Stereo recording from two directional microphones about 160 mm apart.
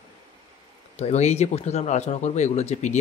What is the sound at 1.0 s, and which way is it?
Speech, 45° left (ahead or behind).